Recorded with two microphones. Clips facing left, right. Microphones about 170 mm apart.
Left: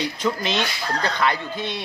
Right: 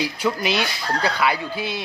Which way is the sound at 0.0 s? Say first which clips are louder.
Right 1 dB; 10° right (ahead or behind).